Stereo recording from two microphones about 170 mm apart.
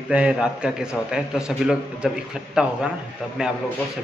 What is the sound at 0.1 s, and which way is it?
Speech, 5° right (ahead or behind).